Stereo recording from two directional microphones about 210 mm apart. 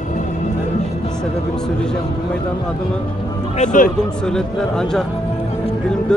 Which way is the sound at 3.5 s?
35° left (ahead or behind).